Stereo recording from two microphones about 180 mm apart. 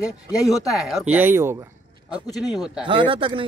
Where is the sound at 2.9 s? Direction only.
30° right (ahead or behind).